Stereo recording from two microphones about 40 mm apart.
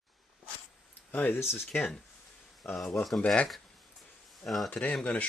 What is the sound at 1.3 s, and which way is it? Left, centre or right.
Speech, left.